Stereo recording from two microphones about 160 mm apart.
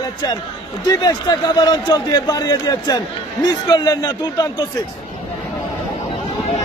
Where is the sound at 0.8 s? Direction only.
25° left (ahead or behind).